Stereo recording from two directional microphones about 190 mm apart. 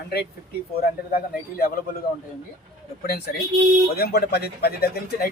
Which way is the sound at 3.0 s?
55° left (ahead or behind).